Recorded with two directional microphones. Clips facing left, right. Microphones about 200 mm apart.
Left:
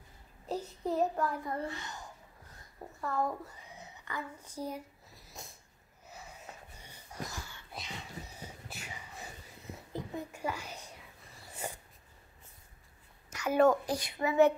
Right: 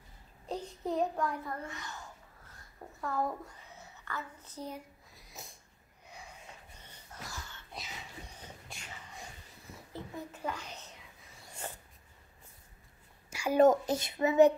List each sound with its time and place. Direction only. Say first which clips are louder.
0.5 s a child's voice: left 1 dB; 5° left (ahead or behind)
1.6 s a woman's voice: left 5 dB; 30° left (ahead or behind)
3.0 s speech: left 1 dB; centre (ahead or behind)
3.7 s a sound: left 1 dB; 15° left (ahead or behind)
6.8 s wheeze: left 7 dB; 10° left (ahead or behind)
7.7 s a sound: left 2 dB; 5° left (ahead or behind)
13.3 s a child's voice: right 2 dB; 10° right (ahead or behind)